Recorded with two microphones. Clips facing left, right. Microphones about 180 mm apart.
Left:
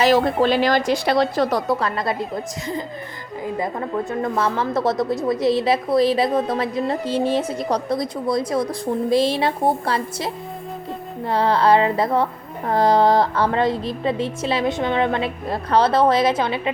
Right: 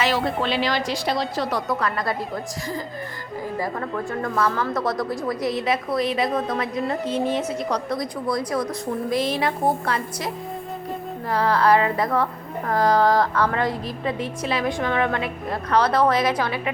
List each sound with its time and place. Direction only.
0.0 s a woman's voice: 40° left (ahead or behind); by 1.5 s 65° left (ahead or behind)
1.5 s a woman's voice: 35° left (ahead or behind)